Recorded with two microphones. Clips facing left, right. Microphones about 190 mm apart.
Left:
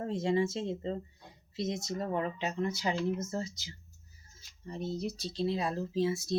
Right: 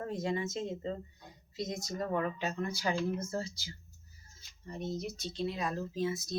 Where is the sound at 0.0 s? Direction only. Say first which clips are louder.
Left 5 dB; 25° left (ahead or behind).